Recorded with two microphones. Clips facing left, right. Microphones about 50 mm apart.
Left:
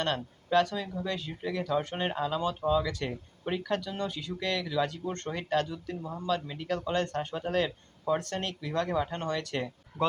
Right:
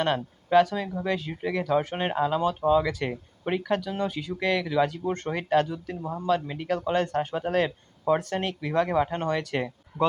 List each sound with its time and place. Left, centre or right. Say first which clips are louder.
0.0 s speech: right 5 dB; centre